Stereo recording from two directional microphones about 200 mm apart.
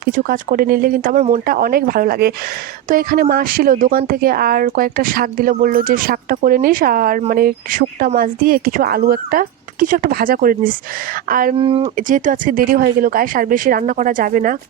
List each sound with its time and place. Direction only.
0.0 s speech: 45° right (ahead or behind)
11.5 s speech: 25° right (ahead or behind)
11.9 s speech: 40° right (ahead or behind)